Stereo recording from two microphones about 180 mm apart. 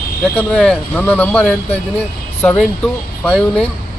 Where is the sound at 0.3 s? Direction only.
5° left (ahead or behind).